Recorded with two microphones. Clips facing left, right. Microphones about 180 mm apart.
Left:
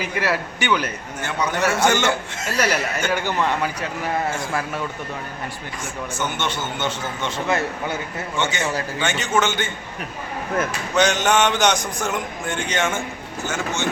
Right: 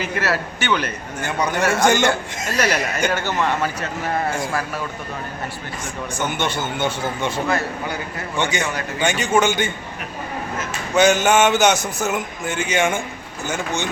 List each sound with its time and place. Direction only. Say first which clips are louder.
0.0 s speech: right 1 dB; 15° left (ahead or behind)
1.2 s a man's voice: right 1 dB; 10° right (ahead or behind)
2.6 s speech: right 2 dB; 10° left (ahead or behind)
6.1 s a man's voice: right 3 dB; 10° right (ahead or behind)
7.4 s speech: even; 20° left (ahead or behind)
8.4 s a man's voice: right 1 dB; 15° right (ahead or behind)
10.7 s a man's voice: right 7 dB; 10° right (ahead or behind)